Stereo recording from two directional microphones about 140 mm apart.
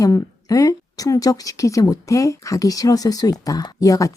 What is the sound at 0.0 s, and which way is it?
A woman's voice, 25° left (ahead or behind).